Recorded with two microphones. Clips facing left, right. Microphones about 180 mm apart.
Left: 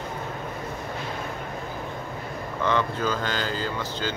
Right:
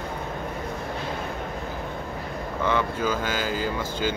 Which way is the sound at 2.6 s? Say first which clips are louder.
Even; 10° right (ahead or behind).